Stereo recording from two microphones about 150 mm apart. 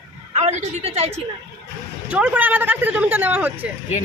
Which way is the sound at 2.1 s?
10° right (ahead or behind).